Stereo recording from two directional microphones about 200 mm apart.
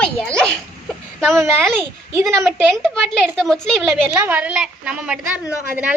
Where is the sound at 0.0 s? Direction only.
5° left (ahead or behind).